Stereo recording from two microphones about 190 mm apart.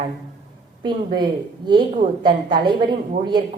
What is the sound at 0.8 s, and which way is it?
A woman's voice, 25° right (ahead or behind).